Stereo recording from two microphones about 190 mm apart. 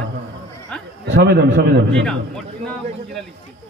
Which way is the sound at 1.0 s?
65° right (ahead or behind).